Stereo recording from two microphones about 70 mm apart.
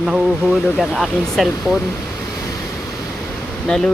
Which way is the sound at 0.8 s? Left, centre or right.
Centre.